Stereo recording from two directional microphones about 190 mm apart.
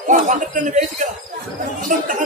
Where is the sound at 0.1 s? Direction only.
40° right (ahead or behind).